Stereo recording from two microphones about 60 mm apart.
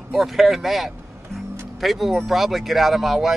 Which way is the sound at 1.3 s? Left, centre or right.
Centre.